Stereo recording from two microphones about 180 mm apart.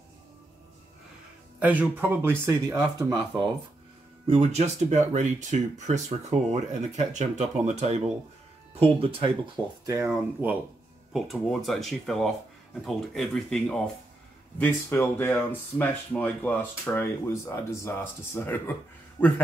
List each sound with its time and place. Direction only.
1.6 s speech: 10° right (ahead or behind)
4.3 s speech: 35° right (ahead or behind)
10.4 s speech: 10° right (ahead or behind)
11.1 s speech: centre (ahead or behind)